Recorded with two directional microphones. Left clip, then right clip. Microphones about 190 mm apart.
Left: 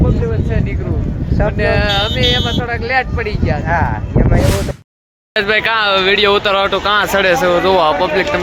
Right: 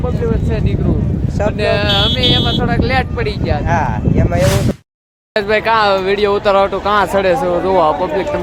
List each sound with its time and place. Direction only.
1.6 s speech: 25° right (ahead or behind)
5.3 s speech: 5° right (ahead or behind)